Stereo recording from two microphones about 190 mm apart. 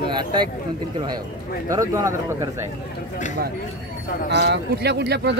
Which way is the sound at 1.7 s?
15° right (ahead or behind).